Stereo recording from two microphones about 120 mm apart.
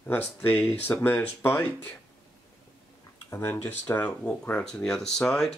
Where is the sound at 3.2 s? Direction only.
20° left (ahead or behind).